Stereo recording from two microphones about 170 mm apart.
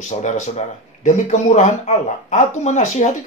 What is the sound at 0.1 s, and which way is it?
Speech, 45° left (ahead or behind).